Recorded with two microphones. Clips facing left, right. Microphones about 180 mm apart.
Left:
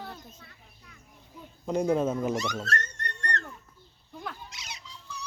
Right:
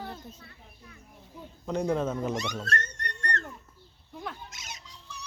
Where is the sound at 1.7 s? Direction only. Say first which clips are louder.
Left 3 dB; 10° left (ahead or behind).